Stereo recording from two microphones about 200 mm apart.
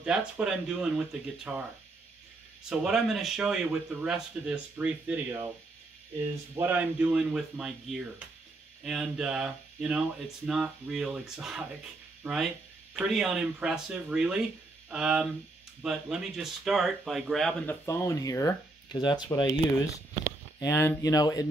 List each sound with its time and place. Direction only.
0.0 s speech: 5° right (ahead or behind)
2.7 s speech: centre (ahead or behind)
6.5 s speech: 10° right (ahead or behind)
17.8 s speech: 15° left (ahead or behind)
20.5 s speech: 15° left (ahead or behind)